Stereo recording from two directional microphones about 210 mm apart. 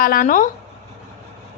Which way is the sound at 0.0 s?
40° left (ahead or behind).